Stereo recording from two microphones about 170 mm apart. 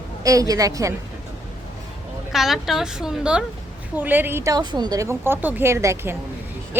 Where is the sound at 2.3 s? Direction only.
Centre (ahead or behind).